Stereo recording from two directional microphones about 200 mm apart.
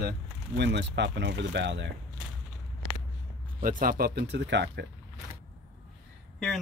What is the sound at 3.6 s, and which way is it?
Speech, 45° right (ahead or behind).